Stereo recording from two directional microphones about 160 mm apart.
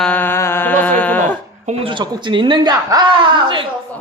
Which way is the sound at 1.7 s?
35° right (ahead or behind).